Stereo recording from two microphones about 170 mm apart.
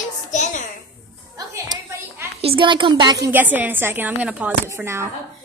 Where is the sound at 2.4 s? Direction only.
30° right (ahead or behind).